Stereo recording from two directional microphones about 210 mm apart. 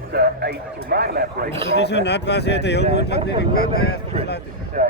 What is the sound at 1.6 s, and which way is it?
Speech, 55° left (ahead or behind).